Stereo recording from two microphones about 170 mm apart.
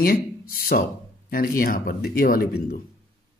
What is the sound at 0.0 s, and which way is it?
Speech, 60° left (ahead or behind).